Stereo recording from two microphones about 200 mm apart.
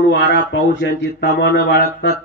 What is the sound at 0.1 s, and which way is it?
Speech, 60° left (ahead or behind).